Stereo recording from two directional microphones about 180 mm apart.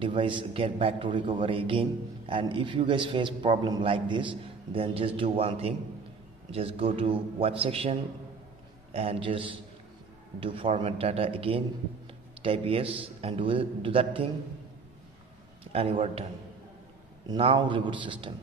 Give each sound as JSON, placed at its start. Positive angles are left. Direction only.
{"t": 0.0, "sound": "a man's voice", "side_deg": -25}
{"t": 15.7, "sound": "a man's voice", "side_deg": -30}
{"t": 17.3, "sound": "a man's voice", "side_deg": -30}